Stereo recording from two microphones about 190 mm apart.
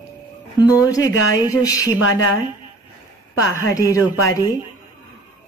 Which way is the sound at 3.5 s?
15° left (ahead or behind).